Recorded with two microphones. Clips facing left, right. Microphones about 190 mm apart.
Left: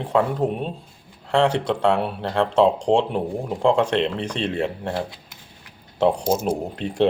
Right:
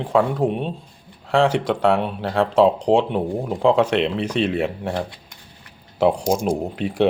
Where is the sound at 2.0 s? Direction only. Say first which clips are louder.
Right 1 dB; centre (ahead or behind).